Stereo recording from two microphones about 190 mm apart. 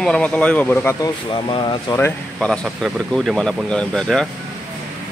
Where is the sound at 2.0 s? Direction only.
10° left (ahead or behind).